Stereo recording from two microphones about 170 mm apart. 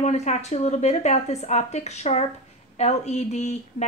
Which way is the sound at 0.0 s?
40° left (ahead or behind).